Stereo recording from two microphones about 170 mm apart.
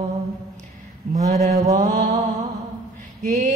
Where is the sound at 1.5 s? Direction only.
20° right (ahead or behind).